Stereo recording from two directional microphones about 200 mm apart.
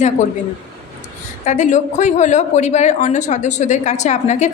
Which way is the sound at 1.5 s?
35° left (ahead or behind).